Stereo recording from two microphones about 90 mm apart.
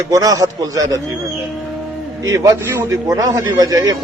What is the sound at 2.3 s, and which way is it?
A man's voice, 40° right (ahead or behind).